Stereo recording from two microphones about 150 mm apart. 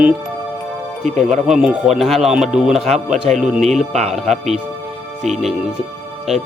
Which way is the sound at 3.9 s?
45° right (ahead or behind).